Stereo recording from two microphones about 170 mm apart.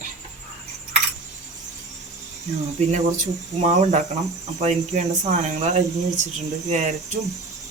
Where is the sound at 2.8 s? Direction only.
45° right (ahead or behind).